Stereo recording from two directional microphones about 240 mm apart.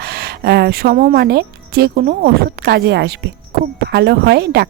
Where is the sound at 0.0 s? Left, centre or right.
Right.